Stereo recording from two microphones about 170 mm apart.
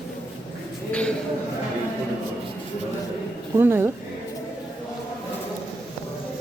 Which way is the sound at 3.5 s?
15° right (ahead or behind).